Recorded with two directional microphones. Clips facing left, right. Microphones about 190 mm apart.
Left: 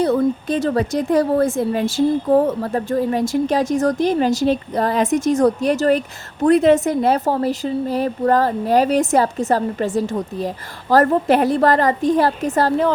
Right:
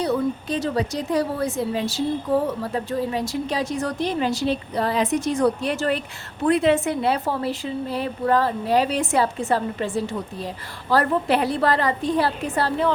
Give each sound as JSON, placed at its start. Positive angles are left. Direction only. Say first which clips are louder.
{"t": 0.0, "sound": "a woman's voice", "louder": "left 6 dB", "side_deg": 50}